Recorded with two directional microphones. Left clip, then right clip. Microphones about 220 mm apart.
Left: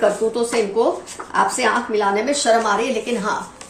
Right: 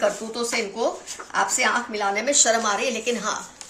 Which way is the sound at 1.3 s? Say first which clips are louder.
Left 4 dB; 45° right (ahead or behind).